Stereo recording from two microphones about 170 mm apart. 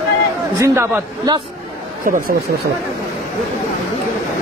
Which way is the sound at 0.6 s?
20° right (ahead or behind).